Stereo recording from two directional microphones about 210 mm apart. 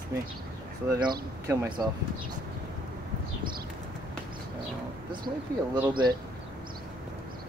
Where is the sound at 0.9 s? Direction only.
20° right (ahead or behind).